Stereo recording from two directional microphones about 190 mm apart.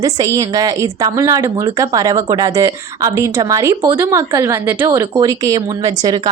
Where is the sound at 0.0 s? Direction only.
20° right (ahead or behind).